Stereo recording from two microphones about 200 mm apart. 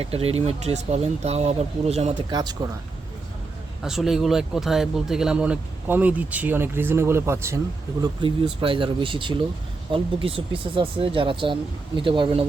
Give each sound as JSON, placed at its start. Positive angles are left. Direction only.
{"t": 0.0, "sound": "speech", "side_deg": -30}
{"t": 3.8, "sound": "speech", "side_deg": 0}
{"t": 8.0, "sound": "speech", "side_deg": -25}